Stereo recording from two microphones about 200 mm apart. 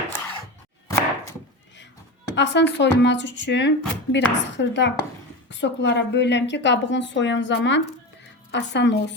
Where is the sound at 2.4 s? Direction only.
60° left (ahead or behind).